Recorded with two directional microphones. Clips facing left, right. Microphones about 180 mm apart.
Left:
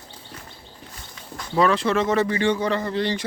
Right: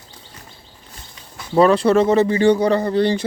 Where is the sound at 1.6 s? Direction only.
35° right (ahead or behind).